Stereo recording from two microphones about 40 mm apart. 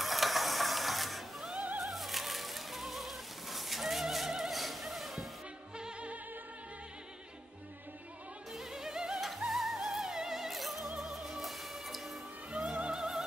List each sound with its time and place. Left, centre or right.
0.0 s ratchet: centre
1.8 s music: centre
5.8 s music: right
8.5 s opera: centre
9.3 s music: centre
12.4 s music: centre